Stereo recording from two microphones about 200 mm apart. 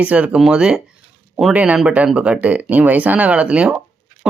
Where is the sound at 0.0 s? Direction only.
5° right (ahead or behind).